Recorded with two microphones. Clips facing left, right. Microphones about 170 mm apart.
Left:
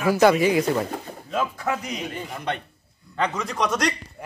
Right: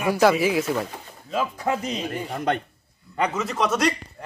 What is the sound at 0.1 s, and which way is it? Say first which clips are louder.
Speech: left 2 dB; centre (ahead or behind).